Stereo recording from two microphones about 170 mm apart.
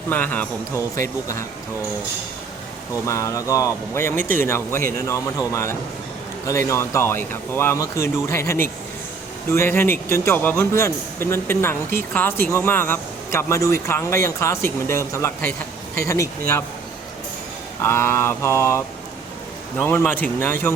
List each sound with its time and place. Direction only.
0.1 s speech: 10° left (ahead or behind)
2.9 s speech: 20° left (ahead or behind)
17.8 s speech: 15° left (ahead or behind)